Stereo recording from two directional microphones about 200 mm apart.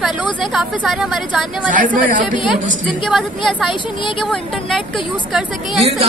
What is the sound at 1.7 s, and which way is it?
Speech, 40° right (ahead or behind).